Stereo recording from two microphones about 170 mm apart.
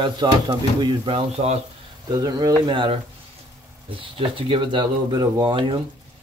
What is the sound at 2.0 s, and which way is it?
Speech, 20° right (ahead or behind).